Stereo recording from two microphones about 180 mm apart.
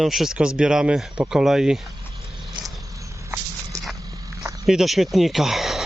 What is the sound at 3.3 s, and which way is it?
Dog, 15° right (ahead or behind).